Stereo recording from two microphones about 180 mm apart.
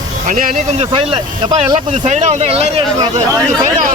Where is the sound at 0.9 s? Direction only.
30° right (ahead or behind).